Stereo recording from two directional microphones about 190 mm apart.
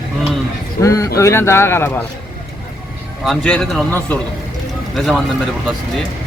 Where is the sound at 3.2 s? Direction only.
5° left (ahead or behind).